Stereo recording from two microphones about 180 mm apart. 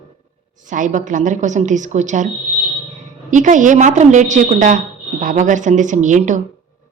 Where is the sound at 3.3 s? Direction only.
45° right (ahead or behind).